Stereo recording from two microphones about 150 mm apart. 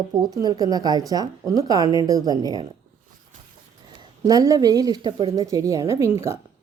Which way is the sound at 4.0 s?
25° right (ahead or behind).